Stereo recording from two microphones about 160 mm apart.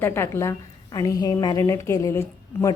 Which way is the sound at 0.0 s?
15° left (ahead or behind).